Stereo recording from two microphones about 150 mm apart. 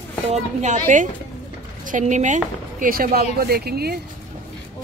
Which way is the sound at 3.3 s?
90° right.